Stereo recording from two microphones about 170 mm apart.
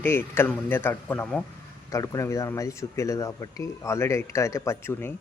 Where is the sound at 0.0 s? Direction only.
15° left (ahead or behind).